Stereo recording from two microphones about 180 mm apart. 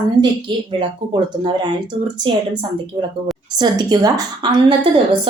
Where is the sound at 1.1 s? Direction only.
25° right (ahead or behind).